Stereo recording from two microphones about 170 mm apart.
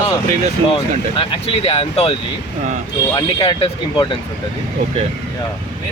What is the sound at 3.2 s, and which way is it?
Speech, 30° left (ahead or behind).